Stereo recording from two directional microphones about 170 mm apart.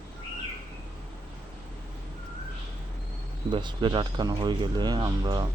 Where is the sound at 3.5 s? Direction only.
25° right (ahead or behind).